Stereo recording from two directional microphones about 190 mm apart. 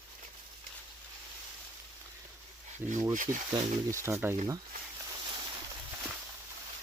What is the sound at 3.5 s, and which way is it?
Speech, 15° right (ahead or behind).